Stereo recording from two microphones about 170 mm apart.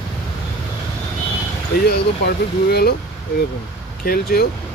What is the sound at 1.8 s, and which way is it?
Speech, 70° left (ahead or behind).